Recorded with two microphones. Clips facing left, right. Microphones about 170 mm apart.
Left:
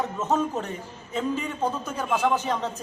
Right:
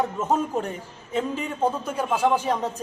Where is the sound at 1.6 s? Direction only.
10° right (ahead or behind).